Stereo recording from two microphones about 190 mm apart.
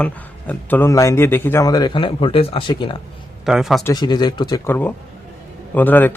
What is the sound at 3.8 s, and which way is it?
Speech, 20° left (ahead or behind).